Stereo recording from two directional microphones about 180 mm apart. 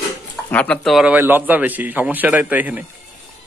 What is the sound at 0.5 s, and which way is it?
A man's voice, 10° left (ahead or behind).